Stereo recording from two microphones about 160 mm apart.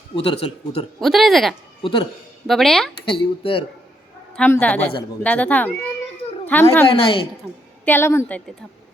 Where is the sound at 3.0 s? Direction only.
35° left (ahead or behind).